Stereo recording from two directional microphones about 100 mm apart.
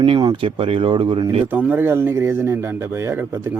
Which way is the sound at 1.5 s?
20° right (ahead or behind).